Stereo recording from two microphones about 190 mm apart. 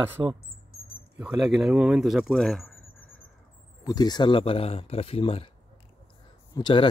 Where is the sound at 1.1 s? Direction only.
Centre (ahead or behind).